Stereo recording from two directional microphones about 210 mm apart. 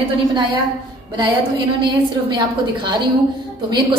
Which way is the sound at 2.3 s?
20° right (ahead or behind).